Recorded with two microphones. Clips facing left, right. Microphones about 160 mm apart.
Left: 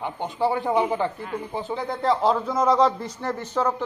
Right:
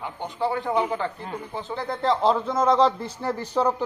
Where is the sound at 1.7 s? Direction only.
Centre (ahead or behind).